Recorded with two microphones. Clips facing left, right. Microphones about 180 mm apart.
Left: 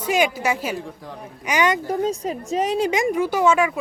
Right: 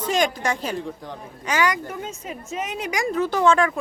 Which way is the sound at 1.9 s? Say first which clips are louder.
Left 10 dB; 35° left (ahead or behind).